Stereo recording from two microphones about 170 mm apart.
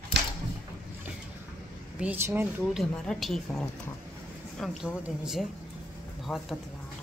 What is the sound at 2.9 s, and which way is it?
Speech, 5° left (ahead or behind).